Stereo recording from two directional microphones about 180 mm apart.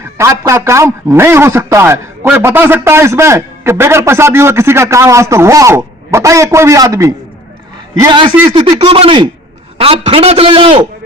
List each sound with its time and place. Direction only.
0.0 s a man's voice: 15° right (ahead or behind)